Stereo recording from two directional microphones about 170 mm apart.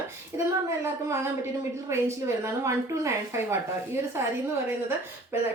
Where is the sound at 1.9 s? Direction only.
15° right (ahead or behind).